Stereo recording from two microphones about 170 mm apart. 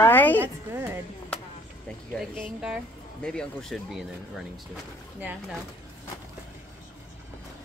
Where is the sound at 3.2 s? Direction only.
5° left (ahead or behind).